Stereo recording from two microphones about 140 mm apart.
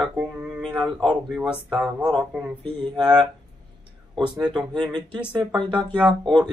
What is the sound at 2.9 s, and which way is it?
Speech, 30° right (ahead or behind).